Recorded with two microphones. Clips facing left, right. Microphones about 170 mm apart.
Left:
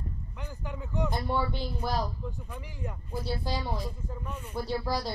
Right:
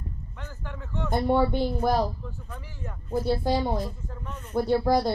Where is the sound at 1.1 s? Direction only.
60° right (ahead or behind).